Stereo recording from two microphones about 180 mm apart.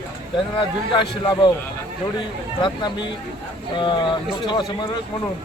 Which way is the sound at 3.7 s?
25° left (ahead or behind).